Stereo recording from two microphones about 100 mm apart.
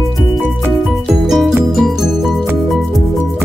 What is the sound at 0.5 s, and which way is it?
Music, centre (ahead or behind).